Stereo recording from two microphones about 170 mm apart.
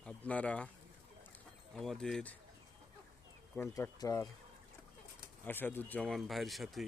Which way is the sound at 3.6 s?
15° left (ahead or behind).